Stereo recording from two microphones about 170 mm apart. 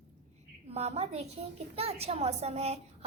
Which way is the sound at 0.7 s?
40° right (ahead or behind).